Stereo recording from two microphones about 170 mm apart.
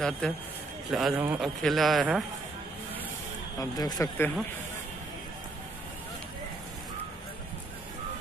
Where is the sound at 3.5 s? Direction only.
20° left (ahead or behind).